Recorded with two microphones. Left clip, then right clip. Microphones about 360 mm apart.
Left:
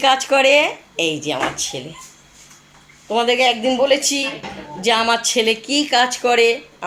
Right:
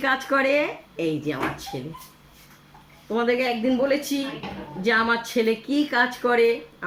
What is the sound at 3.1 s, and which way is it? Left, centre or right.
Speech, left.